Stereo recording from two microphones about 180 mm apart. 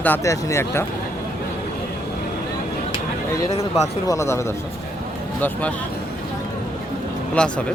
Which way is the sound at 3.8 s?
15° left (ahead or behind).